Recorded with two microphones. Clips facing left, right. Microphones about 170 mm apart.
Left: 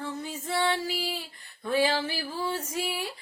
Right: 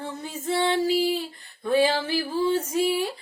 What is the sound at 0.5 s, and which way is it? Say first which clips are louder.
Music: right 6 dB; 25° right (ahead or behind).